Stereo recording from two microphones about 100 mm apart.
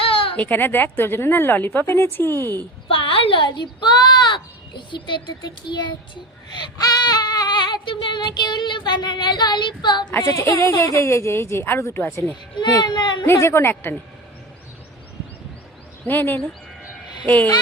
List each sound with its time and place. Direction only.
0.0 s a sound: 65° left (ahead or behind)
0.3 s speech: 20° left (ahead or behind)
2.9 s a sound: 65° left (ahead or behind); by 4.4 s 50° left (ahead or behind)
4.9 s a child's voice: 50° left (ahead or behind)
10.2 s speech: 30° left (ahead or behind)
12.8 s a child's voice: 50° left (ahead or behind)
13.2 s speech: 25° left (ahead or behind)
16.0 s speech: 20° left (ahead or behind)